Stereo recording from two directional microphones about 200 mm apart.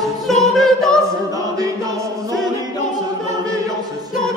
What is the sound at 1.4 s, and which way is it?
Music, 20° right (ahead or behind).